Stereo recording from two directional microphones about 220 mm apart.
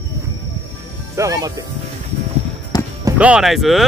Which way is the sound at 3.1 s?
5° right (ahead or behind).